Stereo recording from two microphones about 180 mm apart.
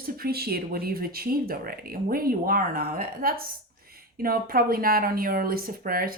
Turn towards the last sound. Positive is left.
turn(degrees=-55)  # may be behind; listen again after turning